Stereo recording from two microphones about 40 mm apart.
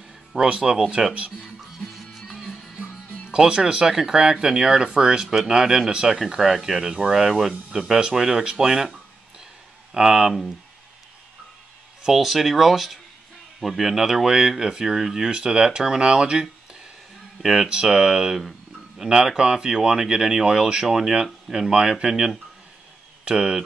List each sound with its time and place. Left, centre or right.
0.4 s speech: centre
2.0 s music: centre
2.8 s music: centre
4.1 s speech: centre
9.9 s speech: centre
12.0 s speech: centre